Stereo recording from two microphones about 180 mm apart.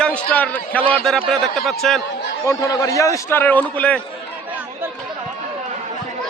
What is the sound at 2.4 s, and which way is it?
A man's voice, 20° left (ahead or behind).